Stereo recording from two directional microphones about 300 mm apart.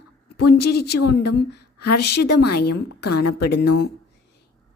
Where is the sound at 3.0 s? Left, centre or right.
Left.